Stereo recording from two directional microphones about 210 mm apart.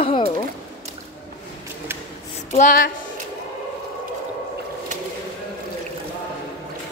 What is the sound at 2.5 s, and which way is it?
Speech, 40° left (ahead or behind).